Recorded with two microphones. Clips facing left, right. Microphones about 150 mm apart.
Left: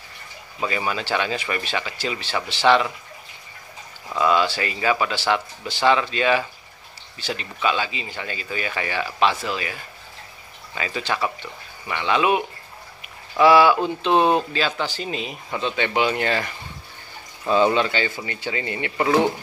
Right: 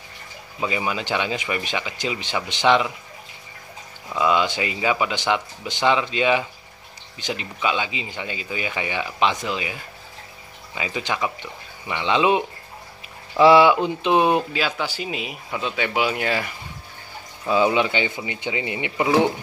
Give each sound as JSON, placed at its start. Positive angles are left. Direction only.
{"t": 0.6, "sound": "speech", "side_deg": -15}
{"t": 4.1, "sound": "speech", "side_deg": -15}